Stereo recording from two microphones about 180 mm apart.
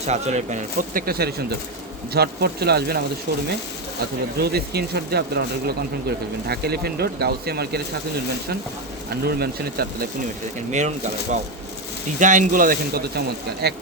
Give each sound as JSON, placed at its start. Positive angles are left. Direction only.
{"t": 0.0, "sound": "a man's voice", "side_deg": -40}
{"t": 4.4, "sound": "speech", "side_deg": -60}
{"t": 9.0, "sound": "speech", "side_deg": -60}
{"t": 10.7, "sound": "a man's voice", "side_deg": -40}